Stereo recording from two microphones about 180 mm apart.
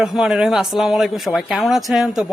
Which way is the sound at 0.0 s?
5° right (ahead or behind).